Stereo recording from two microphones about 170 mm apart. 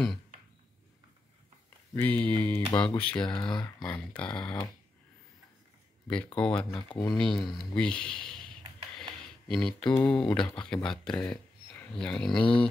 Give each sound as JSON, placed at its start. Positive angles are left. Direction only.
{"t": 2.0, "sound": "speech", "side_deg": 10}
{"t": 3.3, "sound": "speech", "side_deg": 25}
{"t": 3.6, "sound": "speech", "side_deg": 5}
{"t": 6.0, "sound": "speech", "side_deg": 5}
{"t": 9.5, "sound": "speech", "side_deg": 5}